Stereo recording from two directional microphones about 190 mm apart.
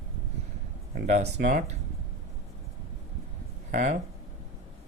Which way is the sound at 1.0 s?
40° right (ahead or behind).